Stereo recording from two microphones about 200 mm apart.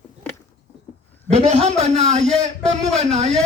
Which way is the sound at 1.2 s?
35° right (ahead or behind).